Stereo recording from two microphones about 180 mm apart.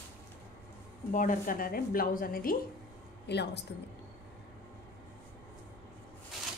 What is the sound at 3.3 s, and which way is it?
Speech, 70° left (ahead or behind).